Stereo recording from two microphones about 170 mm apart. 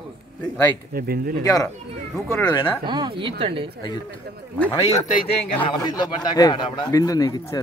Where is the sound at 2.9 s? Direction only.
25° right (ahead or behind).